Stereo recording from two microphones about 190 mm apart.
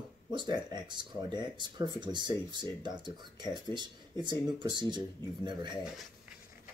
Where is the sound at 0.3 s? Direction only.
25° right (ahead or behind).